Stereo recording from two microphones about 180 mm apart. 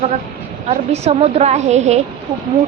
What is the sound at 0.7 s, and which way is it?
A woman's voice, 35° right (ahead or behind).